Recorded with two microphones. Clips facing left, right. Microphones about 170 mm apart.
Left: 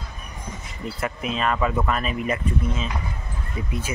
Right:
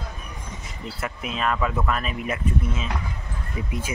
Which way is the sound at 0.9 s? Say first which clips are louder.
Left 3 dB; centre (ahead or behind).